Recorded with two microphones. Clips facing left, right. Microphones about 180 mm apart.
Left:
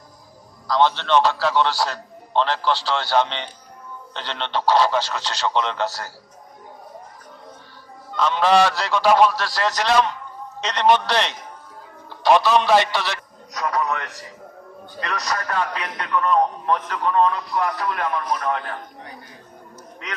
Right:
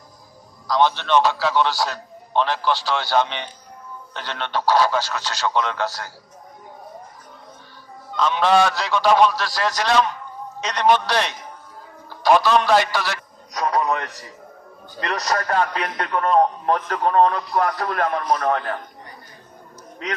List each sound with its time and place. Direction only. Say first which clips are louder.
0.7 s a man's voice: even; 10° right (ahead or behind)
4.7 s honk: even; 5° right (ahead or behind)
8.1 s honk: even; centre (ahead or behind)
10.6 s a man's voice: even; 5° right (ahead or behind)
15.4 s a man's voice: right 3 dB; 45° right (ahead or behind)